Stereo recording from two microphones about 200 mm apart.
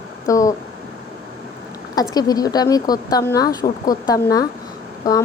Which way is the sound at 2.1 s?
20° left (ahead or behind).